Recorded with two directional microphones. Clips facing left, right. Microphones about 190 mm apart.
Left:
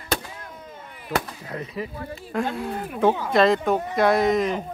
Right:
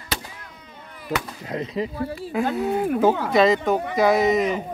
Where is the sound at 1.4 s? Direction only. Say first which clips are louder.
Right 5 dB; 20° right (ahead or behind).